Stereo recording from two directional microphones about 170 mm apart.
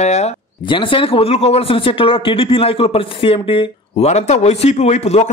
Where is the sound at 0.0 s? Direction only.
40° left (ahead or behind).